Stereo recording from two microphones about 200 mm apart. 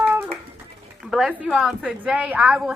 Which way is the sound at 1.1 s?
5° right (ahead or behind).